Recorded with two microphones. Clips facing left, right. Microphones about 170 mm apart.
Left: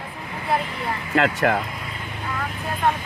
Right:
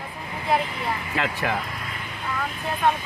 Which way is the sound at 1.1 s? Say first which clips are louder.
Left 9 dB; 65° left (ahead or behind).